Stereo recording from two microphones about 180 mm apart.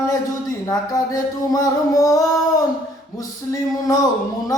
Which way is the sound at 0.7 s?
20° left (ahead or behind).